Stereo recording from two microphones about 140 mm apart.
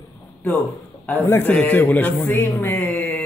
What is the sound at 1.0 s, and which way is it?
A man's voice, 15° left (ahead or behind).